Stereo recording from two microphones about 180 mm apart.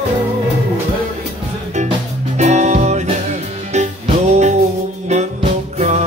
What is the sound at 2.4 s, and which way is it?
Music, 40° right (ahead or behind).